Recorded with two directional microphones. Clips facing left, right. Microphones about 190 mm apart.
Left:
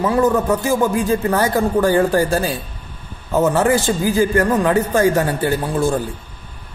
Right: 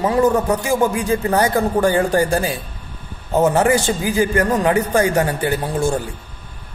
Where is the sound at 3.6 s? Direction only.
15° right (ahead or behind).